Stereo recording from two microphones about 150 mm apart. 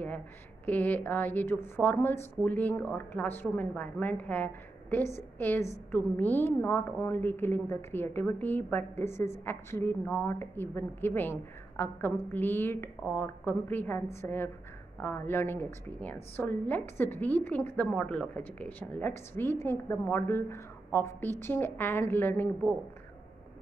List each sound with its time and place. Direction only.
0.7 s a woman's voice: 10° left (ahead or behind)